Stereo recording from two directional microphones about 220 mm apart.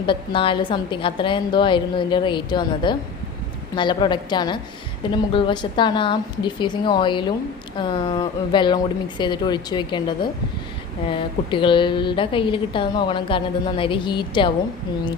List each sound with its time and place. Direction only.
0.0 s a woman's voice: 20° left (ahead or behind)